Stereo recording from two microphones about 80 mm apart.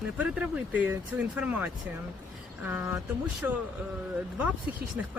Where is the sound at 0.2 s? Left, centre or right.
Centre.